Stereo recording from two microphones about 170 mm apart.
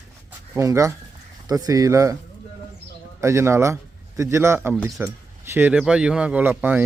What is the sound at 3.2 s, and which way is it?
Speech, 15° right (ahead or behind).